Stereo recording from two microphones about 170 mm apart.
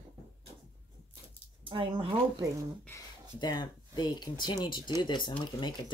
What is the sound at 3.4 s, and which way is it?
Speech, 25° left (ahead or behind).